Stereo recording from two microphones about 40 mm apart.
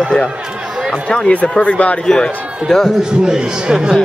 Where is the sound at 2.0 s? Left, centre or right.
Centre.